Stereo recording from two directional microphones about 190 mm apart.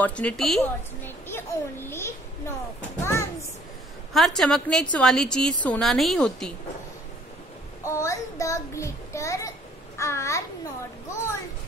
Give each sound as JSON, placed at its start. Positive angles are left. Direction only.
{"t": 0.0, "sound": "a woman's voice", "side_deg": 5}
{"t": 3.0, "sound": "a sound", "side_deg": 15}
{"t": 4.1, "sound": "a woman's voice", "side_deg": 0}
{"t": 7.8, "sound": "a child's voice", "side_deg": 15}